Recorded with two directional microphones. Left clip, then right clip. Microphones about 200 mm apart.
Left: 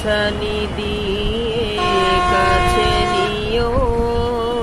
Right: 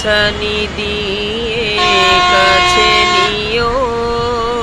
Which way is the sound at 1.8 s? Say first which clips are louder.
Right 6 dB; 20° left (ahead or behind).